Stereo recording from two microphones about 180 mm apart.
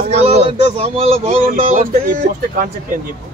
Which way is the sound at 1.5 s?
50° right (ahead or behind).